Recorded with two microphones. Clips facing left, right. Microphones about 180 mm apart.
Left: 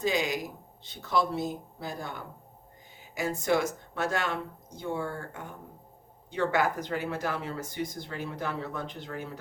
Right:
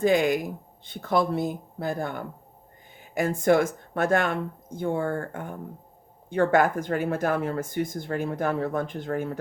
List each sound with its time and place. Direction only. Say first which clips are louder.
0.0 s speech: right 7 dB; 55° right (ahead or behind)